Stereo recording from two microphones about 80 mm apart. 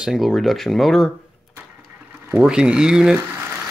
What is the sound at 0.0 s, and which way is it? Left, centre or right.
Speech, centre.